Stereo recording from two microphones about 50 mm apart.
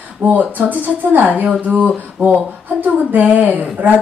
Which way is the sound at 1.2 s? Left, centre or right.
Right.